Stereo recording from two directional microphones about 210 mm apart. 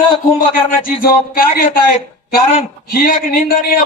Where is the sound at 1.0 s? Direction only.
45° left (ahead or behind).